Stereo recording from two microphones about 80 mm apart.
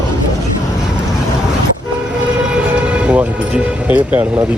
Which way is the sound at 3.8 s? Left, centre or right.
Centre.